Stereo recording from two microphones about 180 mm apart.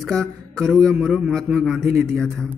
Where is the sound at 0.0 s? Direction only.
Centre (ahead or behind).